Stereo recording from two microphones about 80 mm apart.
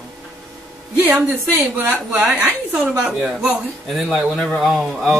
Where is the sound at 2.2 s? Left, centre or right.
Centre.